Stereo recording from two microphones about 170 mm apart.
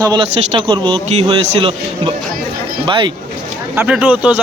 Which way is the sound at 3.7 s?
10° right (ahead or behind).